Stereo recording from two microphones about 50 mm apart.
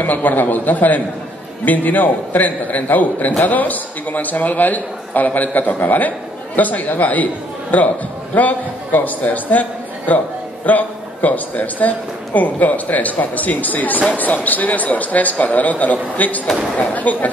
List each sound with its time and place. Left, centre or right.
0.0 s a man's voice: left
8.4 s a man's voice: left